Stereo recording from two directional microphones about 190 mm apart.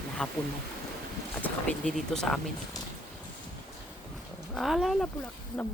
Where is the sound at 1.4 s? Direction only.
5° left (ahead or behind).